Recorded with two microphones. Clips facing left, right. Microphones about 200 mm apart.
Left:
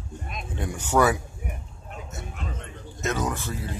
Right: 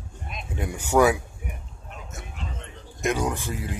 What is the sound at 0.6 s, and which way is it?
Speech, 10° right (ahead or behind).